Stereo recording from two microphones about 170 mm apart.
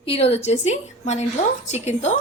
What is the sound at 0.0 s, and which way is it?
A woman's voice, 35° left (ahead or behind).